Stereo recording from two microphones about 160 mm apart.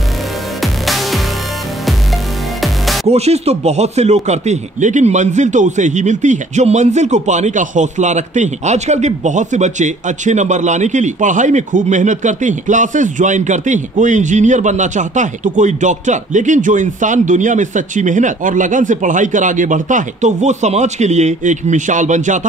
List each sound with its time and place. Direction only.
0.6 s music: centre (ahead or behind)
3.1 s speech: 40° right (ahead or behind)